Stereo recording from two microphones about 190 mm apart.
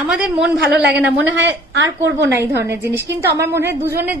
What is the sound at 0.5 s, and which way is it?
Speech, 65° right (ahead or behind).